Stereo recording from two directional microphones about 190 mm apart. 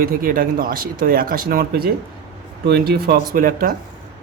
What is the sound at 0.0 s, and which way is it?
Speech, 50° right (ahead or behind).